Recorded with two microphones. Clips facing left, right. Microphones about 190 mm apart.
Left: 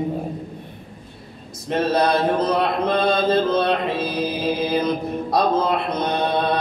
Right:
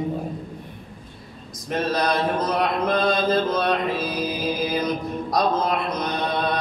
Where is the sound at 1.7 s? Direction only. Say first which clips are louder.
Left 4 dB; 30° left (ahead or behind).